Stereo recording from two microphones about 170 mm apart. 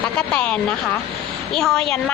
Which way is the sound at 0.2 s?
10° left (ahead or behind).